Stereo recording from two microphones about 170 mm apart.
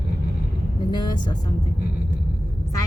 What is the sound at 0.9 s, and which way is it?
Speech, 25° left (ahead or behind).